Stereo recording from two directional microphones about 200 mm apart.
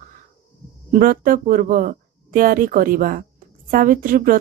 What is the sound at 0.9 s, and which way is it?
Speech, 45° right (ahead or behind).